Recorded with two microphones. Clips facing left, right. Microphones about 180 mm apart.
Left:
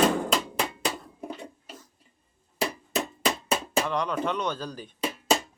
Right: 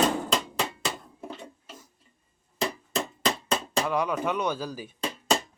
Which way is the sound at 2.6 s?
10° left (ahead or behind).